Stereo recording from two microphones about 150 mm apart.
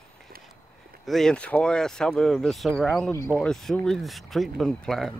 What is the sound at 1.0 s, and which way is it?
Speech, 5° left (ahead or behind).